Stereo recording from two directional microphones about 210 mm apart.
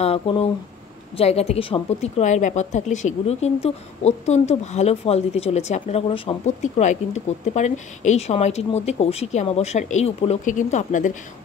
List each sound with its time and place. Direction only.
0.0 s a woman's voice: 30° left (ahead or behind)